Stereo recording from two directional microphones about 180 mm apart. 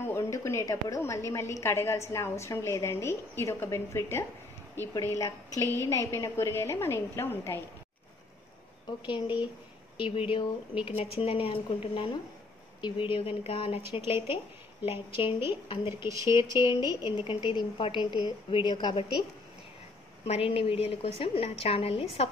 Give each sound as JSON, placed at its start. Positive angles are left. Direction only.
{"t": 0.0, "sound": "a woman's voice", "side_deg": 15}
{"t": 9.0, "sound": "a woman's voice", "side_deg": 25}
{"t": 20.2, "sound": "a woman's voice", "side_deg": 30}